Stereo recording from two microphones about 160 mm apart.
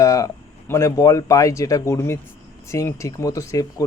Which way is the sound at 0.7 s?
20° left (ahead or behind).